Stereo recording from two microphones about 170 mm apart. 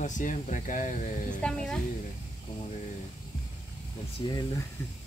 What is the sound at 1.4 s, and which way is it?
Speech, 5° left (ahead or behind).